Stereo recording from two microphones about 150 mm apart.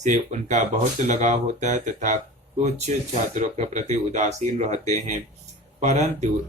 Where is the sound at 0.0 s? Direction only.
50° right (ahead or behind).